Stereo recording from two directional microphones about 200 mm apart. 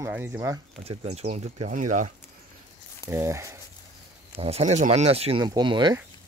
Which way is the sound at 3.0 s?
15° right (ahead or behind).